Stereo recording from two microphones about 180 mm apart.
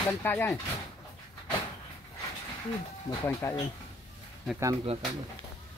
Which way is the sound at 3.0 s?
15° left (ahead or behind).